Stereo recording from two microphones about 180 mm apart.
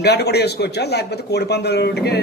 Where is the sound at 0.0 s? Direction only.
65° left (ahead or behind).